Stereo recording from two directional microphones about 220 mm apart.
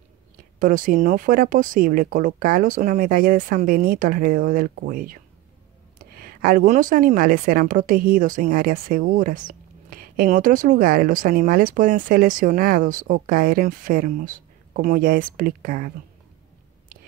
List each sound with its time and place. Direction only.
0.6 s a woman's voice: 40° right (ahead or behind)